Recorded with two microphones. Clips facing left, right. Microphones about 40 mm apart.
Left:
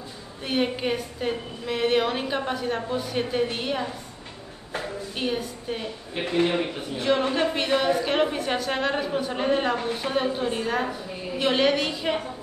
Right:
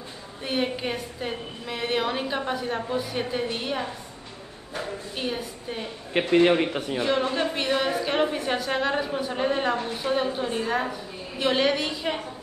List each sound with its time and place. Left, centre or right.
0.5 s a woman's voice: centre
5.1 s a woman's voice: centre
6.1 s a man's voice: right
7.0 s a woman's voice: centre